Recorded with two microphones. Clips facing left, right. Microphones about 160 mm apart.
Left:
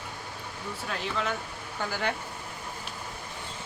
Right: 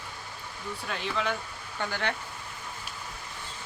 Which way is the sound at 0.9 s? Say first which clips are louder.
Right 1 dB; centre (ahead or behind).